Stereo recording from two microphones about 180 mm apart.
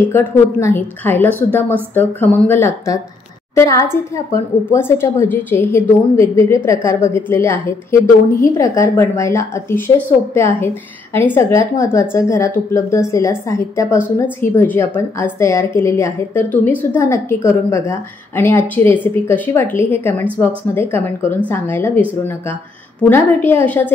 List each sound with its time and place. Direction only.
0.1 s a woman's voice: 15° left (ahead or behind)